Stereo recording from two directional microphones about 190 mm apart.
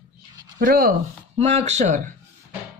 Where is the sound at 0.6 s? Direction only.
50° right (ahead or behind).